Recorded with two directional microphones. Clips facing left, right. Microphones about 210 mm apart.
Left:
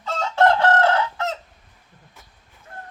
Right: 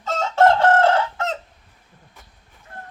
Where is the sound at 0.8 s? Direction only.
50° right (ahead or behind).